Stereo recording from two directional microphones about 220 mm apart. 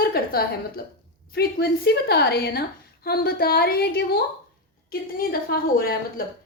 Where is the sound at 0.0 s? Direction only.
45° left (ahead or behind).